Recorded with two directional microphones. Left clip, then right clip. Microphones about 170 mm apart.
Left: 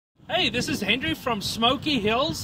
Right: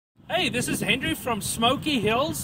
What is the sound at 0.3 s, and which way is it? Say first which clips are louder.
Speech: left 1 dB; 15° right (ahead or behind).